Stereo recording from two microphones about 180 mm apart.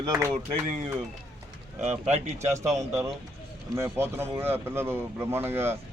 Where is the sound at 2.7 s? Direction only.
15° right (ahead or behind).